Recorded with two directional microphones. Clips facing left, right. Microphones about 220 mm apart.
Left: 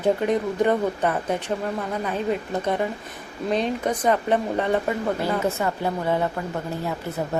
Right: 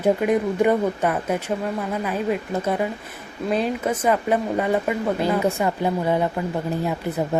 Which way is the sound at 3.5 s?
5° right (ahead or behind).